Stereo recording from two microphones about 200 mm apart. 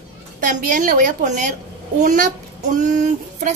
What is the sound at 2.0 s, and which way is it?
Child singing, 40° right (ahead or behind).